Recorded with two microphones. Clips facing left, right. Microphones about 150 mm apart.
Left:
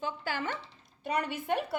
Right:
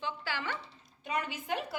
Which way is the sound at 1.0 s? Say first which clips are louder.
Left 4 dB; 65° left (ahead or behind).